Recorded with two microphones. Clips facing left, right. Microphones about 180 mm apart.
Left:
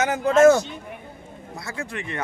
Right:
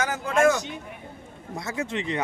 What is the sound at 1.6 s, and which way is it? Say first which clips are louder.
Speech: right 3 dB; 20° right (ahead or behind).